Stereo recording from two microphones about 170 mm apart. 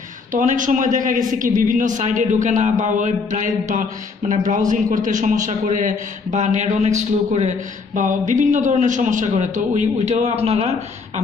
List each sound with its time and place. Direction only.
0.3 s a man's voice: 50° right (ahead or behind)